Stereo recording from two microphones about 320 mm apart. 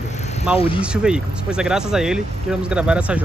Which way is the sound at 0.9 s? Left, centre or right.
Centre.